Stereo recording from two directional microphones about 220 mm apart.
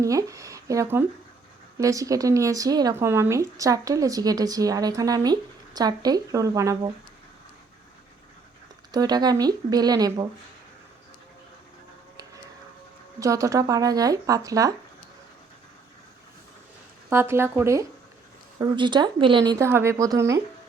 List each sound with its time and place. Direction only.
0.0 s speech: 15° right (ahead or behind)
8.9 s speech: 15° right (ahead or behind)
13.1 s speech: 15° right (ahead or behind)
17.1 s speech: 10° right (ahead or behind)